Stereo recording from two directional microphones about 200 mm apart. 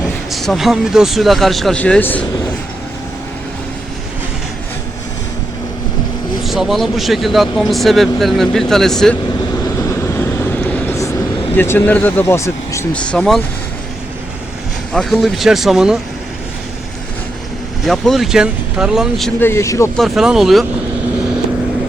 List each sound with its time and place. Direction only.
0.3 s speech: centre (ahead or behind)
6.4 s speech: centre (ahead or behind)
10.7 s vehicle: 15° left (ahead or behind)
11.5 s speech: 10° left (ahead or behind)
14.9 s speech: centre (ahead or behind)
17.8 s speech: centre (ahead or behind)
19.4 s speech: 15° left (ahead or behind)
20.0 s speech: centre (ahead or behind)